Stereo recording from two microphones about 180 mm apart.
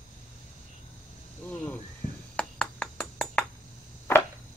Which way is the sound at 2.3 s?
5° left (ahead or behind).